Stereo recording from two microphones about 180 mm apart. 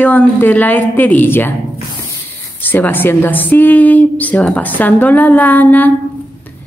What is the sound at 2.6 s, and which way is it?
A woman's voice, 10° left (ahead or behind).